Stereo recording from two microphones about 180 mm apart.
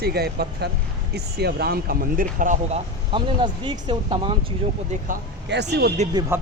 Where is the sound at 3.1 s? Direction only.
25° right (ahead or behind).